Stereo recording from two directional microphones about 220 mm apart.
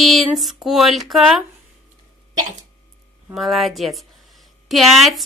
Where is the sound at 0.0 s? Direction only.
Centre (ahead or behind).